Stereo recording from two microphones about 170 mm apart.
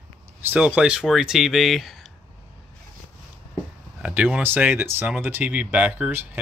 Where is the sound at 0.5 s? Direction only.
10° right (ahead or behind).